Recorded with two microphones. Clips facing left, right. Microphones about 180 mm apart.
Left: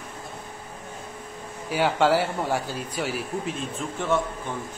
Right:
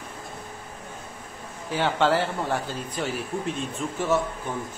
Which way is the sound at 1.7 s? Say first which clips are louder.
Left 2 dB; 10° left (ahead or behind).